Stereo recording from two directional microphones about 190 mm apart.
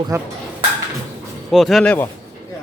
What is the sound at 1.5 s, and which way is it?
Speech, centre (ahead or behind).